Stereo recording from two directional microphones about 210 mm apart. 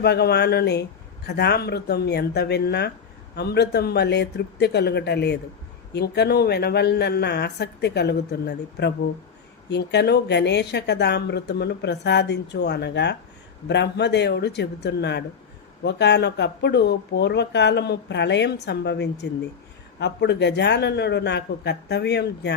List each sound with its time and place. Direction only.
0.0 s speech: 50° left (ahead or behind)